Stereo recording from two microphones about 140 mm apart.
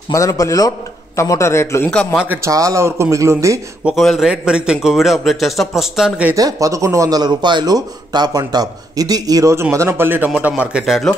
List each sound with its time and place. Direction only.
0.1 s a man's voice: 25° left (ahead or behind)
2.1 s speech: 15° right (ahead or behind)
3.8 s a man's voice: centre (ahead or behind)
6.3 s speech: 25° right (ahead or behind); by 11.1 s 5° right (ahead or behind)